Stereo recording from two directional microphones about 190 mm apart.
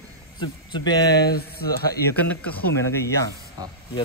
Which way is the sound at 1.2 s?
55° left (ahead or behind).